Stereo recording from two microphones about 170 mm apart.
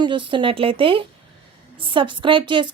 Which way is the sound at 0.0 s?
30° right (ahead or behind).